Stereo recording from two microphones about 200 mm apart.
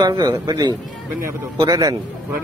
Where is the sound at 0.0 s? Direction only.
20° right (ahead or behind).